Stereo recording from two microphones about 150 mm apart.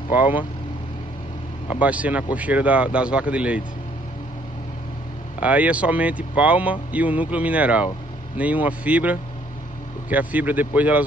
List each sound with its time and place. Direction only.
0.1 s speech: 10° right (ahead or behind)
1.8 s speech: 10° right (ahead or behind)
5.4 s speech: 10° right (ahead or behind)